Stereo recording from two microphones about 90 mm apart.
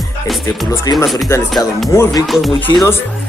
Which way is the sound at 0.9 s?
45° left (ahead or behind).